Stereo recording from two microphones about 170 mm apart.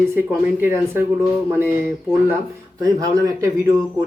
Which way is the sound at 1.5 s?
15° right (ahead or behind).